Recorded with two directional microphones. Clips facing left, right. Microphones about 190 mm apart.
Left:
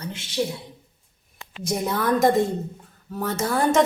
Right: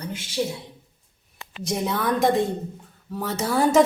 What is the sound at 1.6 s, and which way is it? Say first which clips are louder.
A woman's voice: left 1 dB; centre (ahead or behind).